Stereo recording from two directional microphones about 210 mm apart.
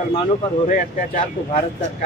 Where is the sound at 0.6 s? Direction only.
40° left (ahead or behind).